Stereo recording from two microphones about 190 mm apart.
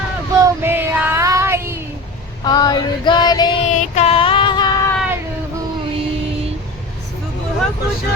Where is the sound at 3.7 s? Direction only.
35° left (ahead or behind).